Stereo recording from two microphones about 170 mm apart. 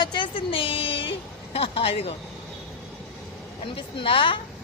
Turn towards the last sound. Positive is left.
turn(degrees=30)  # may be behind; listen again after turning